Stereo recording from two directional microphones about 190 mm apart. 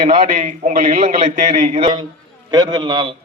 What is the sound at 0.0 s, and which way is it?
A man's voice, 40° right (ahead or behind).